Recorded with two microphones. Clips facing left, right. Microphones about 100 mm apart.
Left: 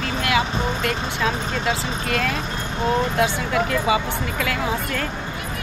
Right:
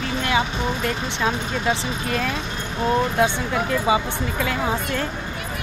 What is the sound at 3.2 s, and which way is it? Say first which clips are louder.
Speech: even; 20° right (ahead or behind).